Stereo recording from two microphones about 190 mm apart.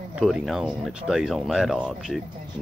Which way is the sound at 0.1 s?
Centre (ahead or behind).